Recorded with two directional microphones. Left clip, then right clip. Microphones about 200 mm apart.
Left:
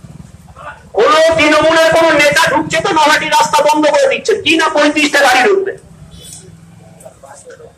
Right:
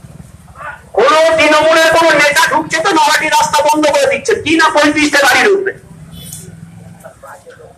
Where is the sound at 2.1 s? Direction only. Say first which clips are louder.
Even; 20° left (ahead or behind).